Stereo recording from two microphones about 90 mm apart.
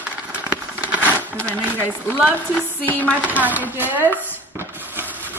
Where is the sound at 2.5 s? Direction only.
15° left (ahead or behind).